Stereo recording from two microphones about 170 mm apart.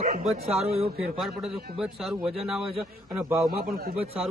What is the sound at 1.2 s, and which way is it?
A man's voice, centre (ahead or behind).